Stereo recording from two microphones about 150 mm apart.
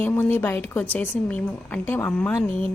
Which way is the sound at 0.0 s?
15° left (ahead or behind).